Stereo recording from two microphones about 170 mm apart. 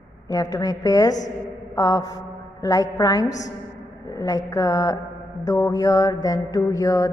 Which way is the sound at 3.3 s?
45° left (ahead or behind).